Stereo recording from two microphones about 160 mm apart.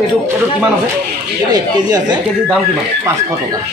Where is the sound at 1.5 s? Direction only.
25° right (ahead or behind).